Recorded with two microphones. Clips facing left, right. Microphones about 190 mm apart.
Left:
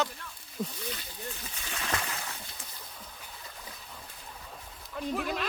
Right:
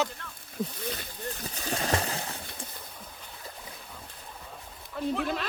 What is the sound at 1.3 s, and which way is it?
Splash, 40° right (ahead or behind).